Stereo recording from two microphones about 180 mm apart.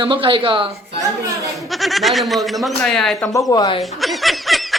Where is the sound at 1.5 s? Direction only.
Centre (ahead or behind).